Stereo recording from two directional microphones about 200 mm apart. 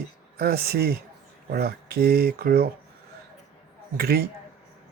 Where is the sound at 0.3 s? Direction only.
50° right (ahead or behind).